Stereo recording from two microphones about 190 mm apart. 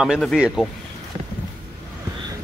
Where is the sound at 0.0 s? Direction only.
Centre (ahead or behind).